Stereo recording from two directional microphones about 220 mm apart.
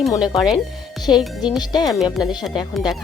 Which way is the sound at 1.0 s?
20° left (ahead or behind).